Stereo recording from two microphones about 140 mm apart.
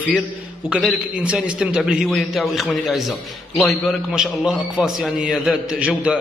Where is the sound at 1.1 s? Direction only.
10° right (ahead or behind).